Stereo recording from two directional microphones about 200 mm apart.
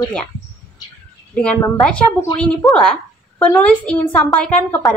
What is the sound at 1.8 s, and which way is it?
Speech, 5° left (ahead or behind).